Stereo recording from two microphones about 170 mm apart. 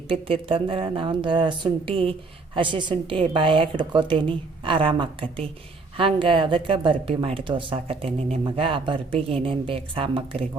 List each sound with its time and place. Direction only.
0.1 s a woman's voice: 30° right (ahead or behind)